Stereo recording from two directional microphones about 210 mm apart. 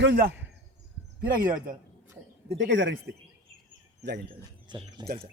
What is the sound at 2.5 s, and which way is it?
Speech, 55° right (ahead or behind).